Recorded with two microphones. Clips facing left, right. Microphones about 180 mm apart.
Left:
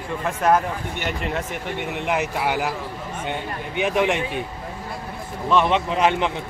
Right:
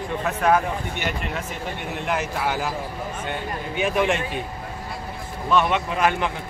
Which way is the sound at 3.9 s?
15° left (ahead or behind).